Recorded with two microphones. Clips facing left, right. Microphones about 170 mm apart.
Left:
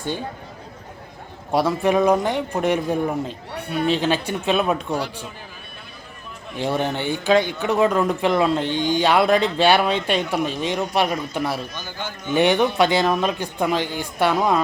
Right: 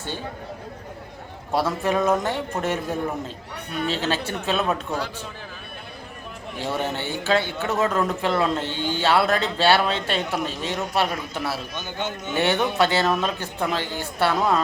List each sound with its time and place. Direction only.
1.5 s speech: 15° left (ahead or behind)
6.8 s speech: 15° left (ahead or behind)
11.9 s a man's voice: 20° right (ahead or behind)
12.3 s speech: 15° left (ahead or behind)